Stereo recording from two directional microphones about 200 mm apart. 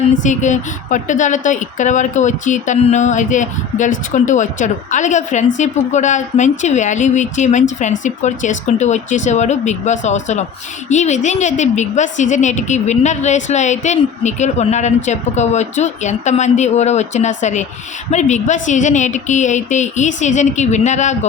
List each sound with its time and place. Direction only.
0.1 s a woman's voice: 40° left (ahead or behind)